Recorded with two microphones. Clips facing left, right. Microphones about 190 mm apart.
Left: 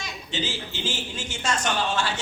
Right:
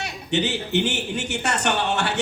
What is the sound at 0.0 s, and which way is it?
A man's voice, 65° right (ahead or behind).